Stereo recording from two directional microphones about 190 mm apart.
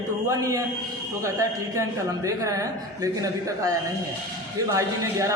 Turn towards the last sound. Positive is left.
turn(degrees=-15)  # may be behind; listen again after turning